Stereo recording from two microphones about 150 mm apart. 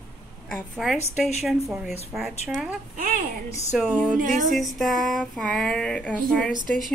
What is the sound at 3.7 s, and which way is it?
Speech, centre (ahead or behind).